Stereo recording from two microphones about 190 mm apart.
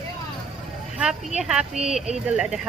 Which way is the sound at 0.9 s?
5° right (ahead or behind).